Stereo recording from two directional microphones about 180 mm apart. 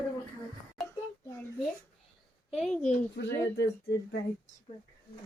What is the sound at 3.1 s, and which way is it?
Speech, 75° left (ahead or behind).